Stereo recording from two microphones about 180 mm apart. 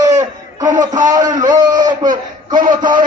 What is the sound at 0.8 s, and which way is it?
Speech, 45° right (ahead or behind).